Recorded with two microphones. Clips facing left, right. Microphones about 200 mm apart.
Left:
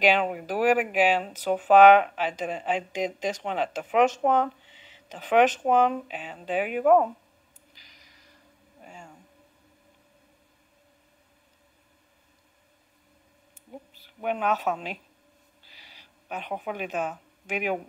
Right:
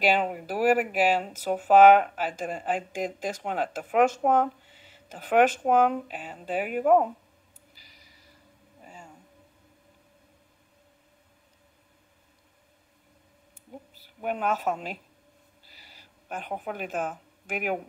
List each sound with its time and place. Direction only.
0.0 s speech: 5° right (ahead or behind)
7.7 s snort: 5° right (ahead or behind)
13.9 s speech: 5° right (ahead or behind)
16.0 s speech: 10° right (ahead or behind)